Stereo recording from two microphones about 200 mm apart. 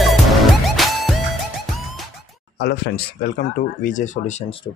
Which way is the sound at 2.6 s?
50° left (ahead or behind).